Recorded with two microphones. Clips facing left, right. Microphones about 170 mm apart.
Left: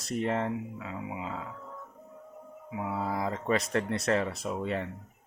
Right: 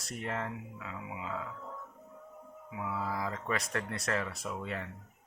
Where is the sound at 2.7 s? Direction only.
30° left (ahead or behind).